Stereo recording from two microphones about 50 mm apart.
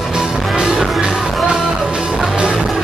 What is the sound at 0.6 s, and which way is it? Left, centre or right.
Music, centre.